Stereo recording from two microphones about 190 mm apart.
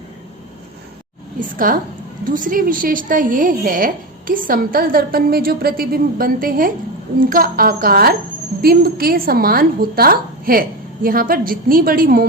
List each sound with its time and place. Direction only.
1.4 s a woman's voice: 45° right (ahead or behind)